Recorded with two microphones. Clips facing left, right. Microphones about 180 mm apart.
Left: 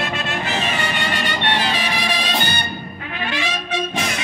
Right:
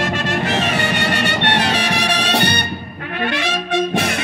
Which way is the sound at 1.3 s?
70° right (ahead or behind).